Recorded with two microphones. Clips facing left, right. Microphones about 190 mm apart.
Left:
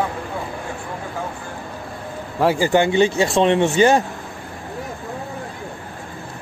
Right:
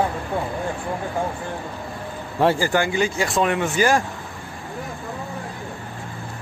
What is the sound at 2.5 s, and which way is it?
Speech, 20° left (ahead or behind).